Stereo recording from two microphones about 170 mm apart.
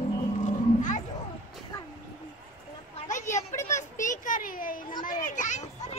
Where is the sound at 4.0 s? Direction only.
50° left (ahead or behind).